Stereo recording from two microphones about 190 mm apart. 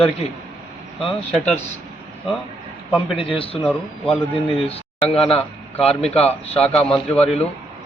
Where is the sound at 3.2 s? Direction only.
30° left (ahead or behind).